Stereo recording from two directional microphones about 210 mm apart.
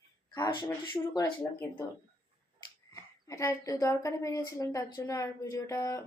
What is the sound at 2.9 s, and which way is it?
A woman's voice, 15° left (ahead or behind).